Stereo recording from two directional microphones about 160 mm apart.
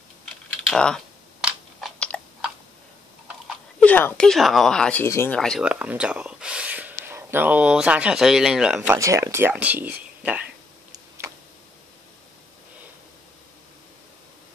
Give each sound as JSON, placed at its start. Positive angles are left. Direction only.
{"t": 0.2, "sound": "typing", "side_deg": 5}
{"t": 2.0, "sound": "chewing", "side_deg": 5}
{"t": 3.8, "sound": "speech", "side_deg": 10}
{"t": 5.0, "sound": "speech", "side_deg": 15}
{"t": 5.4, "sound": "speech", "side_deg": 0}